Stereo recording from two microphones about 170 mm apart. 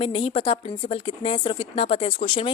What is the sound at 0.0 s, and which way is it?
Speech, 30° left (ahead or behind).